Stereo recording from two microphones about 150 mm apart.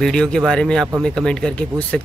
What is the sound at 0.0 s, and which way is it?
Speech, 5° left (ahead or behind).